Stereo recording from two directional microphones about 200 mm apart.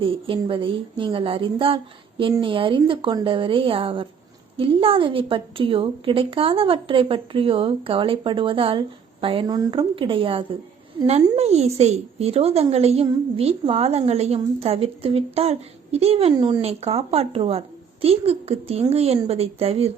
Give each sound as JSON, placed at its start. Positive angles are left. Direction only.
{"t": 0.0, "sound": "a woman's voice", "side_deg": -25}